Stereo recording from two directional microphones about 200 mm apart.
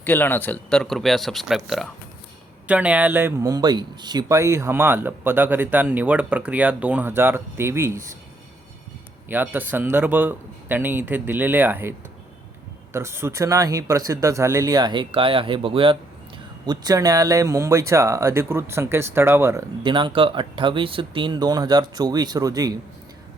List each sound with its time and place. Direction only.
0.0 s speech: 10° left (ahead or behind); by 8.0 s 15° right (ahead or behind)
9.3 s speech: 10° right (ahead or behind)
19.8 s speech: 25° right (ahead or behind)